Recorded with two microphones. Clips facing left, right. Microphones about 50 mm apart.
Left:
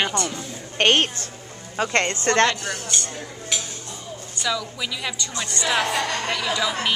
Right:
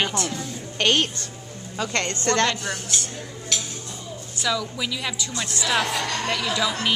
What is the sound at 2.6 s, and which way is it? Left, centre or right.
Speech, centre.